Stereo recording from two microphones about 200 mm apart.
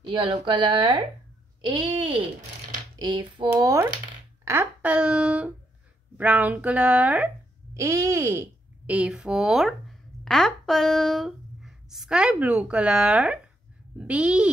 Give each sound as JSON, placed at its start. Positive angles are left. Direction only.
{"t": 0.0, "sound": "a woman's voice", "side_deg": -25}